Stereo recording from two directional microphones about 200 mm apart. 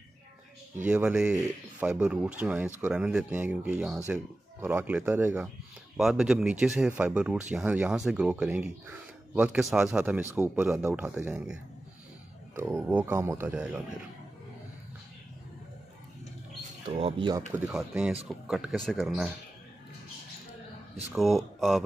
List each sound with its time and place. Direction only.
0.8 s speech: 5° right (ahead or behind)
16.8 s speech: 30° right (ahead or behind)
17.6 s speech: 5° right (ahead or behind)
21.1 s speech: centre (ahead or behind)